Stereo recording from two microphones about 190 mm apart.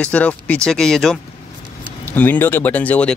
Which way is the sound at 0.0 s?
5° left (ahead or behind).